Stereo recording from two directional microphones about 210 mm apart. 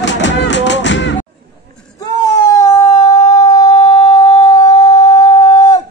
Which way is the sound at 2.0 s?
15° left (ahead or behind).